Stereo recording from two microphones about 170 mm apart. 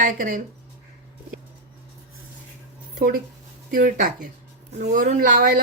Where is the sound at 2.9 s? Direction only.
55° right (ahead or behind).